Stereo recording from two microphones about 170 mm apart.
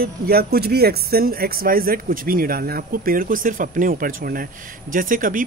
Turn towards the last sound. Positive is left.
turn(degrees=-55)  # may be behind; listen again after turning